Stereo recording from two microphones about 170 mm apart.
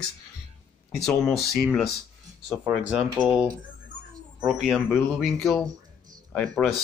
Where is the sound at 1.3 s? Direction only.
Centre (ahead or behind).